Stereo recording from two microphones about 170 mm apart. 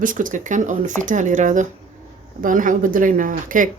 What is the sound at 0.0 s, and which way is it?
Speech, 50° right (ahead or behind).